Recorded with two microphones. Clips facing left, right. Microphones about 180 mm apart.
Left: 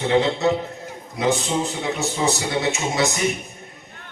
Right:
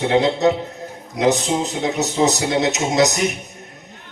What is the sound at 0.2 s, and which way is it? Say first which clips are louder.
Speech: right 3 dB; 40° right (ahead or behind).